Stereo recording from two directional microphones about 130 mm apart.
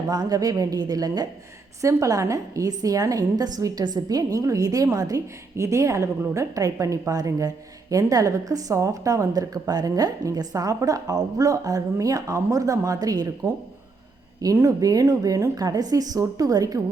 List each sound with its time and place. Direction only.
0.1 s a woman's voice: 30° right (ahead or behind)